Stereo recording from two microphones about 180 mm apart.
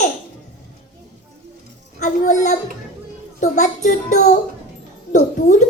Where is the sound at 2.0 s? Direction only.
45° left (ahead or behind).